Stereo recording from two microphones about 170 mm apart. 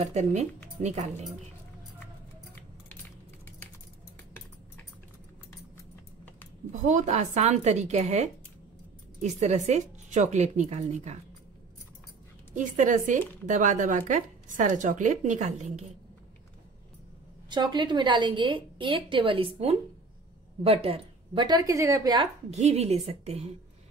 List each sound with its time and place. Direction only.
0.0 s a woman's voice: 40° right (ahead or behind)
6.7 s speech: 45° right (ahead or behind)
12.5 s speech: 50° right (ahead or behind)
17.5 s a woman's voice: 25° right (ahead or behind)
22.5 s a woman's voice: 40° right (ahead or behind)